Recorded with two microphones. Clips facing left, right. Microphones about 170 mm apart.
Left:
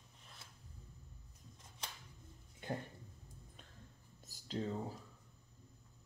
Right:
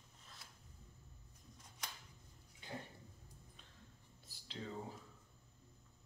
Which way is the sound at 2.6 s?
50° left (ahead or behind).